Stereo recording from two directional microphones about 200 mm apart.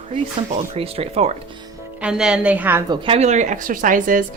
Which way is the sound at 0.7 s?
30° right (ahead or behind).